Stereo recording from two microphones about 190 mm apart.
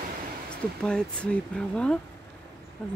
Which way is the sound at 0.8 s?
5° left (ahead or behind).